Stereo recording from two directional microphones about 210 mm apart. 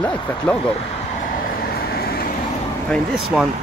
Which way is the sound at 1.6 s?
45° left (ahead or behind).